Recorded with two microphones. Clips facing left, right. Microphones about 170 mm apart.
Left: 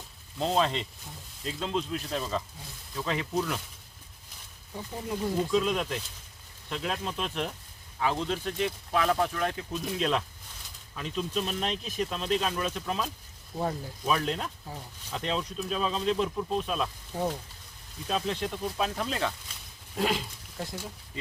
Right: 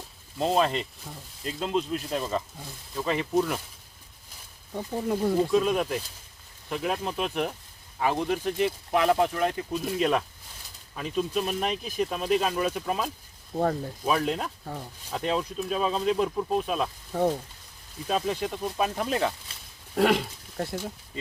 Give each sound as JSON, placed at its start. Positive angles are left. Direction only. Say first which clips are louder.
{"t": 0.3, "sound": "speech", "louder": "right 3 dB", "side_deg": -5}
{"t": 4.7, "sound": "speech", "louder": "right 6 dB", "side_deg": -50}
{"t": 5.5, "sound": "speech", "louder": "right 3 dB", "side_deg": -10}
{"t": 13.5, "sound": "speech", "louder": "right 5 dB", "side_deg": -35}
{"t": 14.1, "sound": "speech", "louder": "right 2 dB", "side_deg": -5}
{"t": 18.1, "sound": "speech", "louder": "right 3 dB", "side_deg": -5}
{"t": 20.0, "sound": "speech", "louder": "right 6 dB", "side_deg": -70}